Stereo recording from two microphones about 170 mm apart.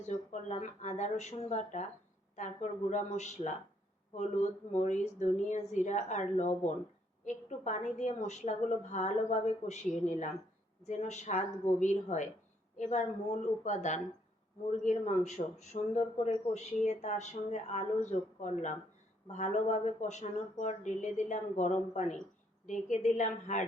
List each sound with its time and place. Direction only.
0.1 s a man's voice: 45° left (ahead or behind)